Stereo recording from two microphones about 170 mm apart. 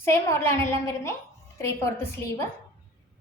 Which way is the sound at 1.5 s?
15° left (ahead or behind).